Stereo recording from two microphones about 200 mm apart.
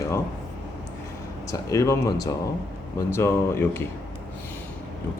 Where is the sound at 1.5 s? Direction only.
15° left (ahead or behind).